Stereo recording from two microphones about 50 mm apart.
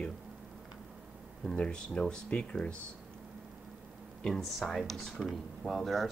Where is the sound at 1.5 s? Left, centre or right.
Centre.